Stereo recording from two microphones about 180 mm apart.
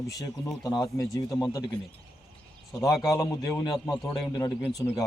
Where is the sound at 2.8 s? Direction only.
20° left (ahead or behind).